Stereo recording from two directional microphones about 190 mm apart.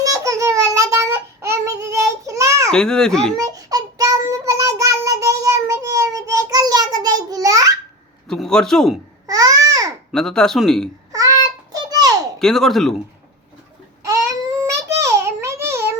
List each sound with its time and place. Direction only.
0.0 s child singing: 15° right (ahead or behind)
2.6 s speech: 5° left (ahead or behind)
3.3 s child singing: 20° right (ahead or behind)
8.3 s a man's voice: 5° left (ahead or behind)
9.2 s babbling: 20° right (ahead or behind)
10.1 s speech: 5° left (ahead or behind)
11.1 s child singing: 20° right (ahead or behind)
11.7 s a sound: 20° right (ahead or behind)
12.4 s speech: centre (ahead or behind)
14.1 s baby cry: 15° right (ahead or behind)
15.0 s child singing: 15° right (ahead or behind)
15.6 s cat: 15° right (ahead or behind)